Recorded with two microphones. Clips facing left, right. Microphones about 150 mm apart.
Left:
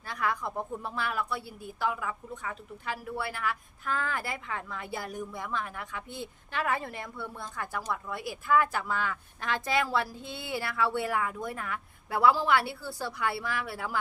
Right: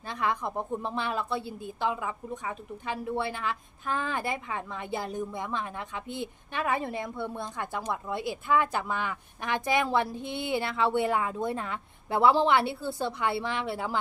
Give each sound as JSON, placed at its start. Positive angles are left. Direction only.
{"t": 0.1, "sound": "speech", "side_deg": -20}